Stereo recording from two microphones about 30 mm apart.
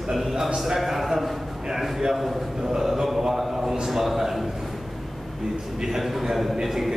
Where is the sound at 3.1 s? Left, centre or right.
Centre.